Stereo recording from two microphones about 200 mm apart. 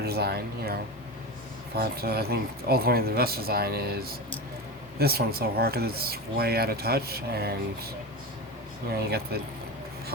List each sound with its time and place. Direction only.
0.0 s speech: 50° right (ahead or behind)
9.0 s speech: 50° right (ahead or behind)